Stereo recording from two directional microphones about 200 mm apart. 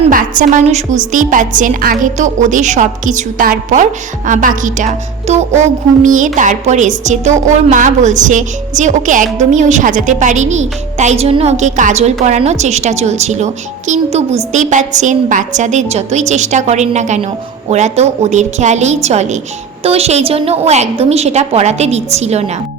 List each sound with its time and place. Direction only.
0.1 s speech: 45° right (ahead or behind)